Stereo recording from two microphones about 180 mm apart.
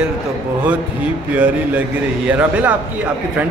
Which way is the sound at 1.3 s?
10° right (ahead or behind).